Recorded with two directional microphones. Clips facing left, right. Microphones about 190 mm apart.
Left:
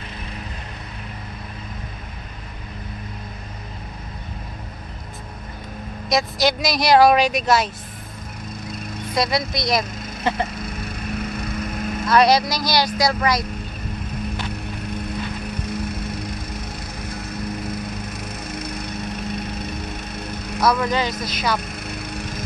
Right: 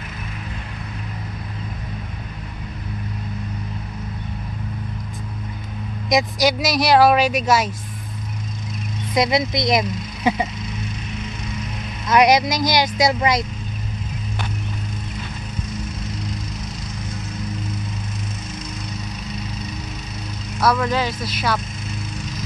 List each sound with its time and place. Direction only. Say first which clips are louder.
6.0 s speech: right 2 dB; 15° right (ahead or behind)
6.6 s speech: left 1 dB; 5° right (ahead or behind)
9.1 s speech: right 3 dB; 20° right (ahead or behind)
10.2 s speech: right 2 dB; 5° right (ahead or behind)
10.5 s a sound: even; 55° left (ahead or behind)
12.1 s speech: right 1 dB; 20° right (ahead or behind)
15.6 s music: left 2 dB; 60° left (ahead or behind)
18.5 s a sound: left 3 dB; 60° left (ahead or behind)
20.6 s speech: even; 5° right (ahead or behind)
21.8 s fowl: left 1 dB; 60° left (ahead or behind)